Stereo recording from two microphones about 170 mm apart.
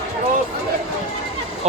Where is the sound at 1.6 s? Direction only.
40° right (ahead or behind).